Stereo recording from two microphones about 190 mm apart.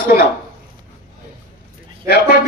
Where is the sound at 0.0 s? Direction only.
50° left (ahead or behind).